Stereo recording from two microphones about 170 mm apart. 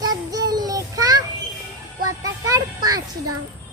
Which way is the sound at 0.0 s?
20° right (ahead or behind).